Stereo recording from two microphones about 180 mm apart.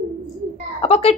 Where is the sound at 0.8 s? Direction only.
35° left (ahead or behind).